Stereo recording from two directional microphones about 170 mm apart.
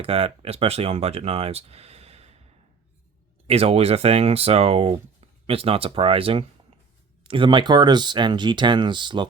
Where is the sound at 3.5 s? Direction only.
35° right (ahead or behind).